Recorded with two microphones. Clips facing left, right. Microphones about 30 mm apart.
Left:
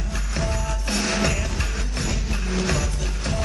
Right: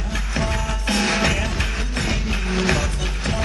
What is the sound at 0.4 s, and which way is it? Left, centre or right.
Music, right.